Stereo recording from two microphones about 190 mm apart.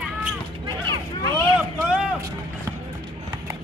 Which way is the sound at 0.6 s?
25° right (ahead or behind).